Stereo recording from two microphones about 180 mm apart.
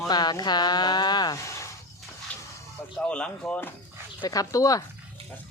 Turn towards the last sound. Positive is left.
turn(degrees=20)  # may be behind; listen again after turning